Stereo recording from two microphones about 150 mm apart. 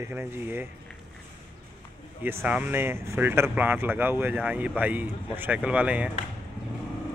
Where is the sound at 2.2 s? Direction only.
10° right (ahead or behind).